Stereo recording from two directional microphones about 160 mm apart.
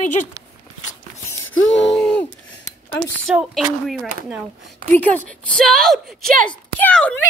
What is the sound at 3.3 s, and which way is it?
Speech, 5° right (ahead or behind).